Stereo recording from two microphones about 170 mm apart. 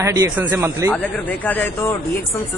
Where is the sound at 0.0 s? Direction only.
15° right (ahead or behind).